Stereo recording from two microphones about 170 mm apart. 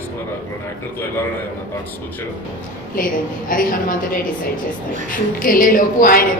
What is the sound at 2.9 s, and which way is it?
A man's voice, 55° left (ahead or behind).